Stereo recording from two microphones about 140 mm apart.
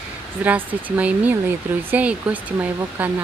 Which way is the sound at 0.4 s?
10° right (ahead or behind).